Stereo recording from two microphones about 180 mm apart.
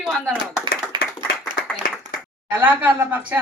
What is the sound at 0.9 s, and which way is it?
Clapping, 25° right (ahead or behind).